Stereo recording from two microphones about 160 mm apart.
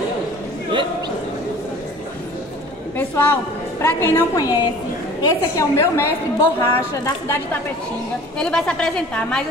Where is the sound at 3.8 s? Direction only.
15° left (ahead or behind).